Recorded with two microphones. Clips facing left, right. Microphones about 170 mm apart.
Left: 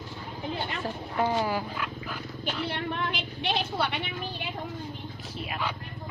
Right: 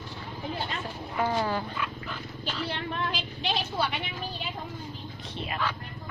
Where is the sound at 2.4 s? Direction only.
60° left (ahead or behind).